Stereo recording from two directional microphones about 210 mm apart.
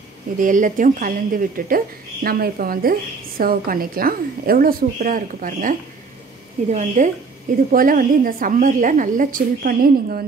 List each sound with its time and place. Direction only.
0.4 s a woman's voice: 40° right (ahead or behind)